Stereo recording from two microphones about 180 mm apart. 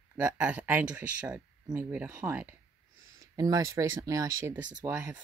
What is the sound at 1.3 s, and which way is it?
Speech, 20° right (ahead or behind).